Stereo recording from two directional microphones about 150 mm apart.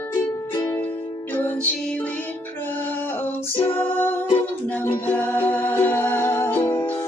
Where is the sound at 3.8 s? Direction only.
10° left (ahead or behind).